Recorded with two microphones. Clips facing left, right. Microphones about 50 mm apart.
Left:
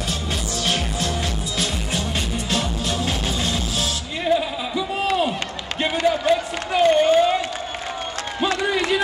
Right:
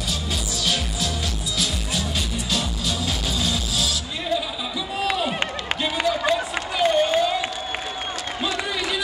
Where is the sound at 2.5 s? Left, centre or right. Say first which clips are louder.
Left 3 dB; left.